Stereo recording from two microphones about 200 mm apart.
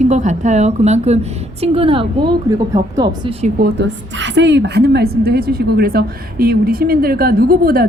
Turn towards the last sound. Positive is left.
turn(degrees=-45)  # may be behind; listen again after turning